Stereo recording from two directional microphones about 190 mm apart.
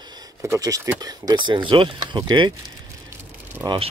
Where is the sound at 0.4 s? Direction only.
15° right (ahead or behind).